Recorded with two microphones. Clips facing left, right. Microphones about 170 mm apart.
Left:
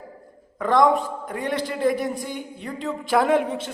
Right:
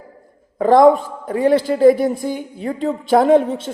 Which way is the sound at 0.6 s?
35° right (ahead or behind).